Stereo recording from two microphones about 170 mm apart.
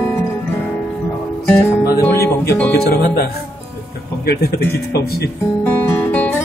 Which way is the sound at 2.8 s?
65° left (ahead or behind).